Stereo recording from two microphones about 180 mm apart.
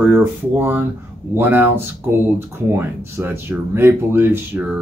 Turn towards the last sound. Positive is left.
turn(degrees=-10)  # may be behind; listen again after turning